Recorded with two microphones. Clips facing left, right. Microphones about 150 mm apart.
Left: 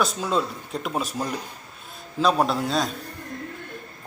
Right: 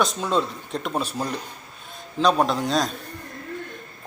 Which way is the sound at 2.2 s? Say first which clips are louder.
Right 1 dB; 5° left (ahead or behind).